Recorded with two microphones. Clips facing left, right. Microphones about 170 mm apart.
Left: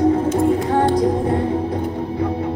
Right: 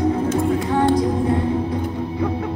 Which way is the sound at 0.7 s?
40° left (ahead or behind).